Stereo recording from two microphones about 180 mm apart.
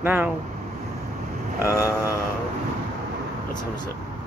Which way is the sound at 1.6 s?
20° left (ahead or behind).